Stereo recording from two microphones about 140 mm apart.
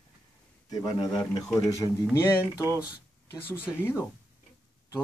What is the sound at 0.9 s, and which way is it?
Speech, 30° left (ahead or behind).